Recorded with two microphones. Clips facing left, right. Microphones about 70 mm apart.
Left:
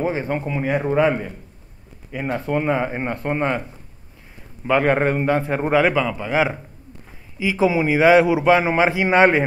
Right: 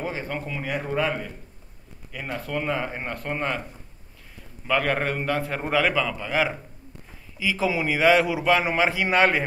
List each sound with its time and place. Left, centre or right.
0.0 s a man's voice: left
4.6 s a man's voice: left